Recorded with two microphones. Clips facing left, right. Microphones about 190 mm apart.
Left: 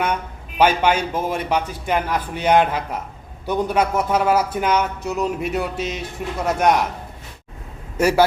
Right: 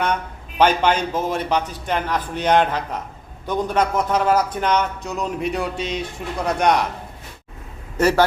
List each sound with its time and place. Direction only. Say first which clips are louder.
0.6 s a man's voice: even; 10° left (ahead or behind)
7.9 s a man's voice: even; 10° left (ahead or behind)